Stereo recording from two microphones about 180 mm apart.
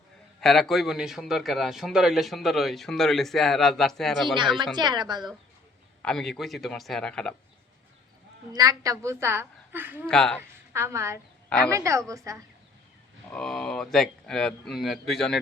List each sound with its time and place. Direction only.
0.4 s speech: centre (ahead or behind)
4.6 s a woman's voice: 25° right (ahead or behind)
6.0 s speech: 5° left (ahead or behind)
8.5 s a woman's voice: 20° right (ahead or behind)
10.1 s speech: 5° left (ahead or behind)
10.7 s a woman's voice: 15° right (ahead or behind)
11.4 s speech: 5° left (ahead or behind)
11.7 s a woman's voice: 15° right (ahead or behind)
13.3 s speech: 5° left (ahead or behind)